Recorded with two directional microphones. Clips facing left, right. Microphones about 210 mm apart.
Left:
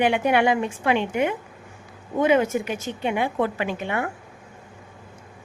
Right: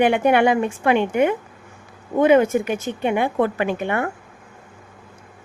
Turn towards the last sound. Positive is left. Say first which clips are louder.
# right 4 dB
turn(degrees=-55)  # may be behind; listen again after turning